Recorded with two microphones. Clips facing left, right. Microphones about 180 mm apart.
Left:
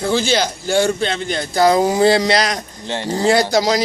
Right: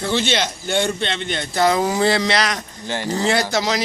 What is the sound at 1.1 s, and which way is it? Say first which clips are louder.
Speech: left 3 dB; 40° left (ahead or behind).